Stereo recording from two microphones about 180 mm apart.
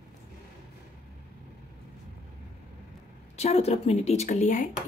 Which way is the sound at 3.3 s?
35° left (ahead or behind).